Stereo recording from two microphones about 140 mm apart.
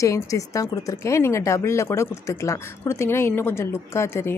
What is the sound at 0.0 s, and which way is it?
Speech, 25° left (ahead or behind).